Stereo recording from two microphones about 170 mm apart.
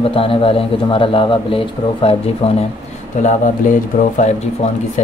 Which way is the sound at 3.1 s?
45° left (ahead or behind).